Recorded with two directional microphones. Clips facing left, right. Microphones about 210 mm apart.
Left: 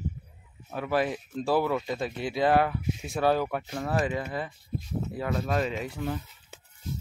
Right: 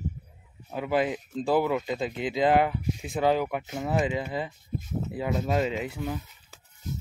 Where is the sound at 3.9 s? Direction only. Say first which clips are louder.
Right 2 dB; 20° right (ahead or behind).